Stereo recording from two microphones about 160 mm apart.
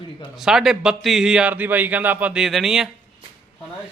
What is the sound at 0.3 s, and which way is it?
A man's voice, 5° right (ahead or behind).